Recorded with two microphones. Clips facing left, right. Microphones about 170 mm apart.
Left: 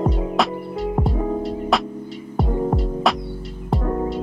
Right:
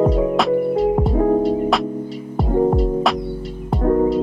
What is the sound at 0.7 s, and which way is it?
Music, centre (ahead or behind).